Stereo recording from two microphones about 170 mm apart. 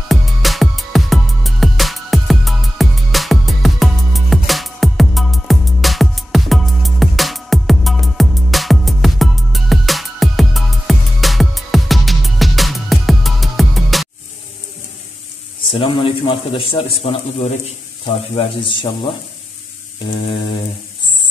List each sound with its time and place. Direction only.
0.1 s music: centre (ahead or behind)
15.7 s a man's voice: 30° left (ahead or behind)